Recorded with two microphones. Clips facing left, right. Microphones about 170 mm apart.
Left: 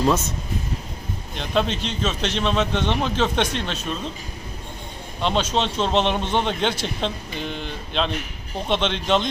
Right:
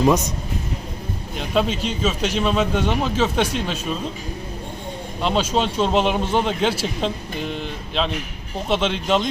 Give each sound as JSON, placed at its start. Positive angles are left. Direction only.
{"t": 0.0, "sound": "speech", "side_deg": -15}
{"t": 1.4, "sound": "speech", "side_deg": -5}
{"t": 5.2, "sound": "speech", "side_deg": -5}